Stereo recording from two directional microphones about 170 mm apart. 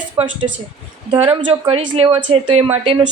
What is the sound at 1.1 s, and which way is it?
A woman's voice, 30° right (ahead or behind).